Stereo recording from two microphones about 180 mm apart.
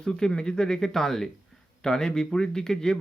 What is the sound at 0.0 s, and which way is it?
Speech, 5° left (ahead or behind).